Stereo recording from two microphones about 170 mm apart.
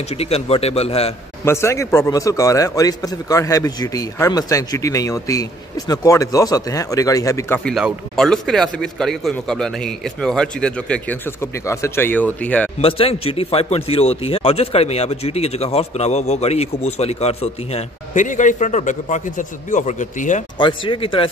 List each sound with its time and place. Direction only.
0.1 s speech: 35° left (ahead or behind)
1.4 s a man's voice: 15° left (ahead or behind)
7.7 s a man's voice: centre (ahead or behind)
12.8 s speech: 35° left (ahead or behind)
20.5 s a man's voice: 30° left (ahead or behind)